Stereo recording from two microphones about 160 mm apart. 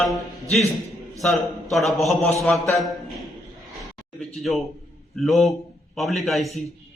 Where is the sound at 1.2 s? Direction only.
Centre (ahead or behind).